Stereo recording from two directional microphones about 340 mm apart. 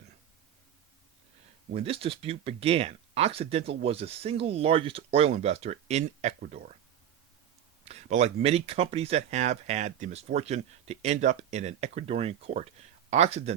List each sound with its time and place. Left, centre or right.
1.7 s speech: centre
7.9 s speech: centre